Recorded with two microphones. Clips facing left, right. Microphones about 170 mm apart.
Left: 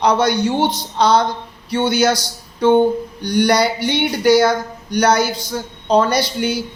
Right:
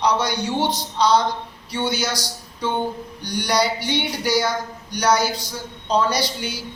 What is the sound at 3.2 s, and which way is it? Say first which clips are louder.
Speech: left 6 dB; 55° left (ahead or behind).